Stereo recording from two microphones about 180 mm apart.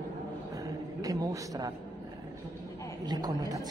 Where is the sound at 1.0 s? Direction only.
20° right (ahead or behind).